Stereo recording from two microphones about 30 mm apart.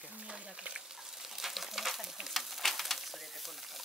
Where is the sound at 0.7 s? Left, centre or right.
Centre.